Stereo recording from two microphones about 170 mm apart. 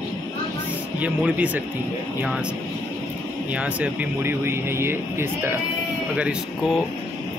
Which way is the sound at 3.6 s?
10° right (ahead or behind).